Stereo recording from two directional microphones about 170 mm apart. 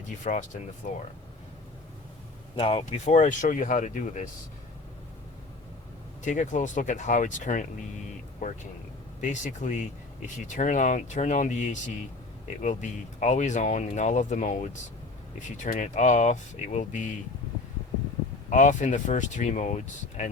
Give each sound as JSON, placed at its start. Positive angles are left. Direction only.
{"t": 0.3, "sound": "speech", "side_deg": 45}
{"t": 2.6, "sound": "speech", "side_deg": 35}
{"t": 6.2, "sound": "speech", "side_deg": 45}
{"t": 9.3, "sound": "speech", "side_deg": 45}
{"t": 18.5, "sound": "speech", "side_deg": 45}